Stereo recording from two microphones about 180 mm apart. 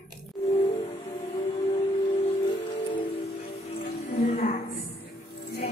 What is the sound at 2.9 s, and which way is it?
Music, 25° left (ahead or behind).